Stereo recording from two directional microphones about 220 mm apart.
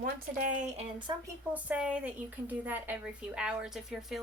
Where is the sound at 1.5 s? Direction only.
5° right (ahead or behind).